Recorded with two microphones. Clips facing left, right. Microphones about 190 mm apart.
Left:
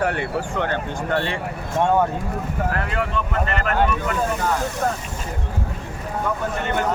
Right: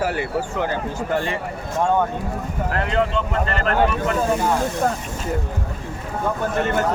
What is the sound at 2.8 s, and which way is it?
Speech, 25° right (ahead or behind).